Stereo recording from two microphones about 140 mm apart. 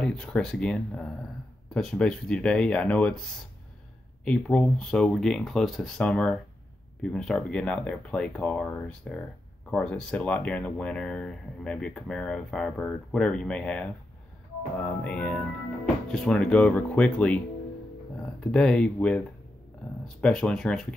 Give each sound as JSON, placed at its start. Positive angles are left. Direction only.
{"t": 0.0, "sound": "speech", "side_deg": 5}
{"t": 15.0, "sound": "speech", "side_deg": 10}